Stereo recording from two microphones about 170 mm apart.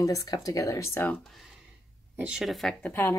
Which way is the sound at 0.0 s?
20° left (ahead or behind).